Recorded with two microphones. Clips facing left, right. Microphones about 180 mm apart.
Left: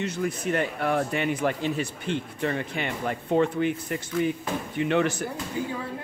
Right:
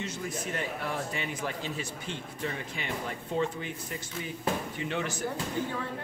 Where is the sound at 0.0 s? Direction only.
60° left (ahead or behind).